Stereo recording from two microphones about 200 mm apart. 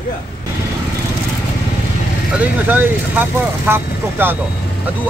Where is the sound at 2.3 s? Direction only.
10° right (ahead or behind).